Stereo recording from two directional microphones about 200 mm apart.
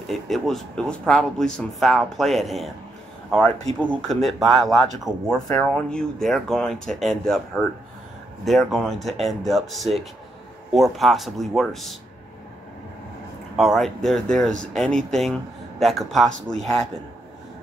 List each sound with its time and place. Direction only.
0.1 s a man's voice: centre (ahead or behind)
8.5 s a man's voice: centre (ahead or behind)
13.6 s a man's voice: centre (ahead or behind)